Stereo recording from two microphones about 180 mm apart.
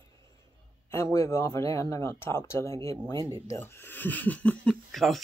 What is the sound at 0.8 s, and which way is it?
Speech, 15° left (ahead or behind).